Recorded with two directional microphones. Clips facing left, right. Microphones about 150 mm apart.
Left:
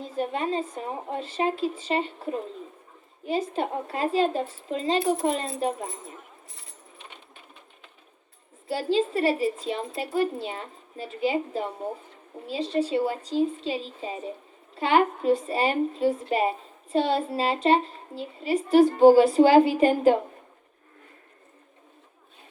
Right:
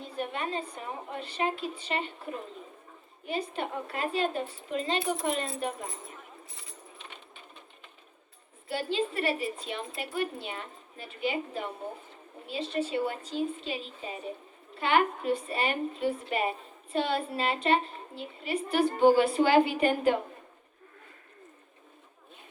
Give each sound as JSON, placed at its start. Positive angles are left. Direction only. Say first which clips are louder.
{"t": 0.0, "sound": "a woman's voice", "louder": "left 6 dB", "side_deg": 35}
{"t": 3.5, "sound": "a woman's voice", "louder": "left 5 dB", "side_deg": 35}
{"t": 8.6, "sound": "a woman's voice", "louder": "left 6 dB", "side_deg": 35}
{"t": 12.7, "sound": "a woman's voice", "louder": "left 5 dB", "side_deg": 30}